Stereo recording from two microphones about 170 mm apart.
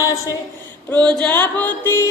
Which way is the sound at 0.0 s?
20° left (ahead or behind).